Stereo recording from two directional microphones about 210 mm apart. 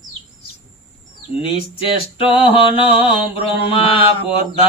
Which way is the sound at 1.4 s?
25° left (ahead or behind).